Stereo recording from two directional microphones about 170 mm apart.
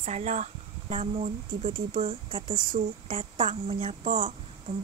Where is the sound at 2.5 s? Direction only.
55° right (ahead or behind).